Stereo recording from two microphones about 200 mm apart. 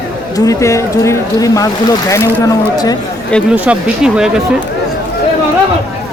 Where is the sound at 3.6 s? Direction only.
5° right (ahead or behind).